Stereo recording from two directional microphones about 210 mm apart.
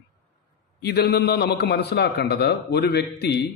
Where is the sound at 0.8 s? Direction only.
50° left (ahead or behind).